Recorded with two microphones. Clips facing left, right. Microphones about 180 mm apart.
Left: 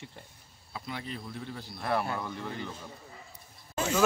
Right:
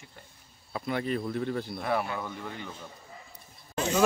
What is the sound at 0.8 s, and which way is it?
Speech, 60° right (ahead or behind).